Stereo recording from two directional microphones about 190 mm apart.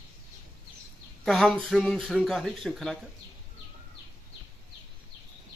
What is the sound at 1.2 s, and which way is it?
Speech, centre (ahead or behind).